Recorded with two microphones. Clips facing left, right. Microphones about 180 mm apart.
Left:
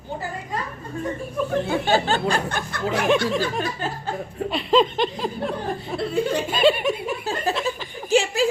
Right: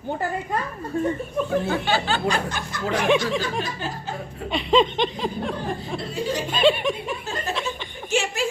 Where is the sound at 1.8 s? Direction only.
45° left (ahead or behind).